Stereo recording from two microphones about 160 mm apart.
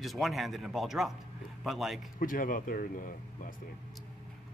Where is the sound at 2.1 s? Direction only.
60° left (ahead or behind).